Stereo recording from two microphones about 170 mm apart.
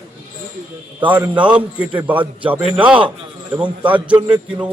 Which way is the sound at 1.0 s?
10° right (ahead or behind).